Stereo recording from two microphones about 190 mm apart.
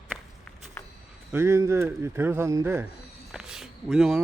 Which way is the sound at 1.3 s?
15° right (ahead or behind).